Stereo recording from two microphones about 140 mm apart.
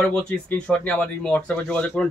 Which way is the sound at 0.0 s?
10° left (ahead or behind).